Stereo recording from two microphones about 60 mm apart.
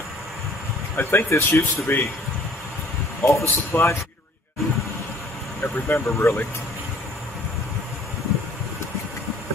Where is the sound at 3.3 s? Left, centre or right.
Left.